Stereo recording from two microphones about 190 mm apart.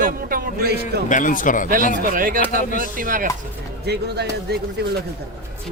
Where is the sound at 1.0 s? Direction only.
45° left (ahead or behind).